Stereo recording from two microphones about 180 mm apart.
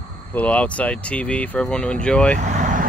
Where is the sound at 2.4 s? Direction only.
45° right (ahead or behind).